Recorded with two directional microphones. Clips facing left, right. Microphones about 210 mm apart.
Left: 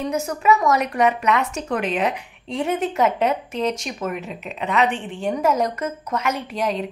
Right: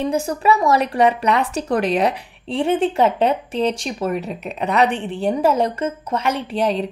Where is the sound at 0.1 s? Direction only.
30° right (ahead or behind).